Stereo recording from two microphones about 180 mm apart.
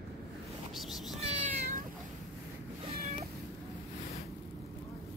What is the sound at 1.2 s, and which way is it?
Meow, 45° right (ahead or behind).